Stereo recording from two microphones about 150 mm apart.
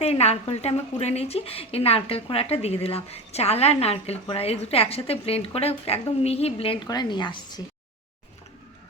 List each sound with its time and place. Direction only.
0.0 s speech: 45° left (ahead or behind)
6.8 s a woman's voice: 25° left (ahead or behind)